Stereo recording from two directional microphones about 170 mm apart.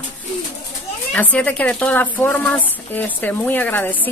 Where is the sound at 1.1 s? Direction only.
10° left (ahead or behind).